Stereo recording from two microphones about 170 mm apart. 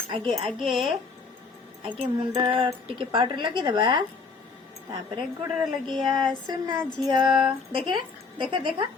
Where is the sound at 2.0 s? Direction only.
35° right (ahead or behind).